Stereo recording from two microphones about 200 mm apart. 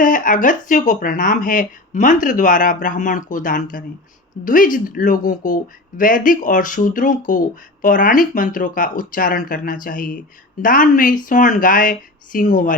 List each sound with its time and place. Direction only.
0.0 s speech: 40° left (ahead or behind)